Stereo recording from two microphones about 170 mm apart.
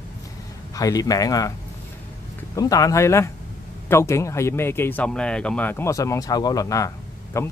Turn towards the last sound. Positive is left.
turn(degrees=15)  # may be behind; listen again after turning